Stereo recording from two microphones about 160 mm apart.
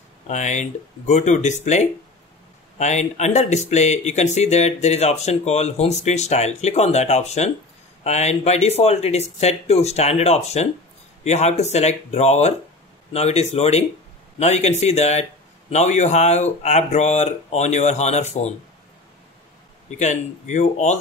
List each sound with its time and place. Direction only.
0.3 s speech: 45° left (ahead or behind)
20.0 s speech: 50° left (ahead or behind)